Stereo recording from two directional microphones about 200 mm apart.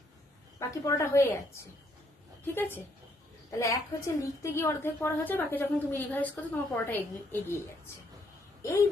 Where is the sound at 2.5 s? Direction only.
10° left (ahead or behind).